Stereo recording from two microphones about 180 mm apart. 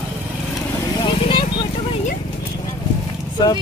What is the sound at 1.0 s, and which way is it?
Vehicle, 25° left (ahead or behind).